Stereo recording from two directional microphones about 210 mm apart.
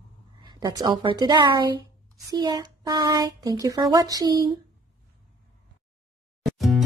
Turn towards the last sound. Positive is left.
turn(degrees=0)  # may be behind; listen again after turning